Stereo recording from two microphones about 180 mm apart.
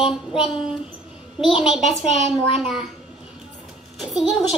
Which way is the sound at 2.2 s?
30° left (ahead or behind).